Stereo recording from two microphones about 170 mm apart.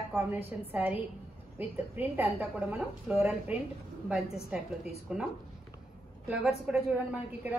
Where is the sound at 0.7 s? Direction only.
10° right (ahead or behind).